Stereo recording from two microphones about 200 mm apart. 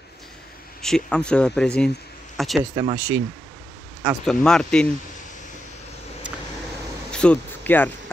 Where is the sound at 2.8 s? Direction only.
20° right (ahead or behind).